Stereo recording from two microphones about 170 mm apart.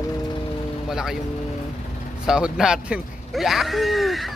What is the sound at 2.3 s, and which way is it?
Speech, 5° right (ahead or behind).